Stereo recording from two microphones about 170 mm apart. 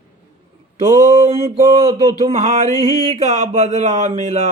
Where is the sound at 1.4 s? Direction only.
20° right (ahead or behind).